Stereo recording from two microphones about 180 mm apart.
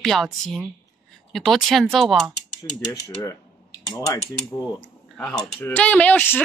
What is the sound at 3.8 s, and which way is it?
Speech, 20° left (ahead or behind).